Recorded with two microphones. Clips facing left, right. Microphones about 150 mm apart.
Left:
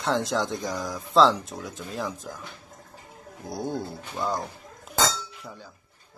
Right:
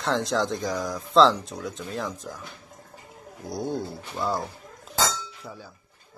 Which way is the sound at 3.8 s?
Centre (ahead or behind).